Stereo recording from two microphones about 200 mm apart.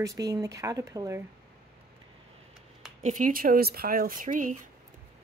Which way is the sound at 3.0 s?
40° right (ahead or behind).